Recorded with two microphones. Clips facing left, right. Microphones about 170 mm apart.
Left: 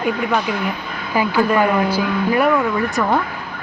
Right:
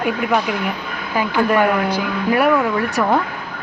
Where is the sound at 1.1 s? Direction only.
10° left (ahead or behind).